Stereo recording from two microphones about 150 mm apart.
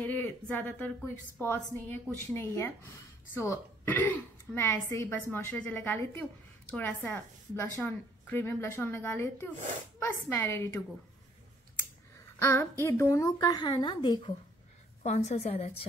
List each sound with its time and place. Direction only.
0.0 s speech: 10° left (ahead or behind)
12.4 s a woman's voice: 15° left (ahead or behind)
15.0 s a woman's voice: 50° left (ahead or behind)